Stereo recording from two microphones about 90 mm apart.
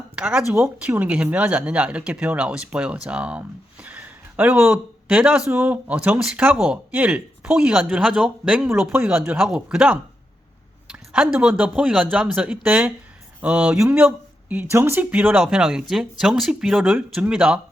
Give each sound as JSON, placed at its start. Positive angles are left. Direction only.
{"t": 0.2, "sound": "speech", "side_deg": -10}
{"t": 8.9, "sound": "speech", "side_deg": -25}
{"t": 9.6, "sound": "speech", "side_deg": -10}
{"t": 14.5, "sound": "speech", "side_deg": -25}
{"t": 15.4, "sound": "speech", "side_deg": -5}